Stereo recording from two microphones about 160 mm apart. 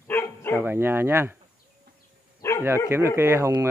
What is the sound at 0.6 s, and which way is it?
Speech, 15° right (ahead or behind).